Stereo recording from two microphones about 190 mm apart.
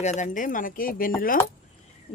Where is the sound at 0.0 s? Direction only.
40° left (ahead or behind).